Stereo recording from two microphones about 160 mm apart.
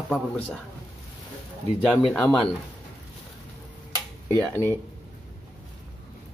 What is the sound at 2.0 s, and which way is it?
Speech, 10° left (ahead or behind).